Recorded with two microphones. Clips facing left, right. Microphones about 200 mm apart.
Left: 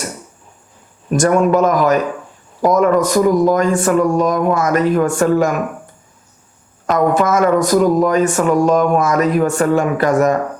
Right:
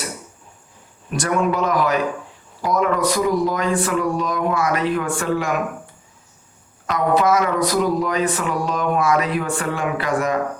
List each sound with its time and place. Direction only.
1.1 s speech: 45° left (ahead or behind)
6.8 s speech: 50° left (ahead or behind)